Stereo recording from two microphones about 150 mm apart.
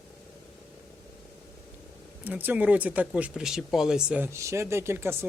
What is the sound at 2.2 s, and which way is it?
Speech, 10° right (ahead or behind).